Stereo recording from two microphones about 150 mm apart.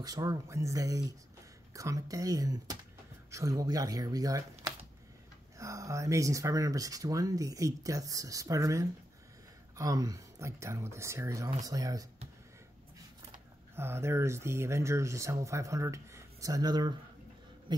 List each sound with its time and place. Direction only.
0.0 s speech: 25° right (ahead or behind)
13.7 s speech: 15° right (ahead or behind)
17.7 s a sound: 30° right (ahead or behind)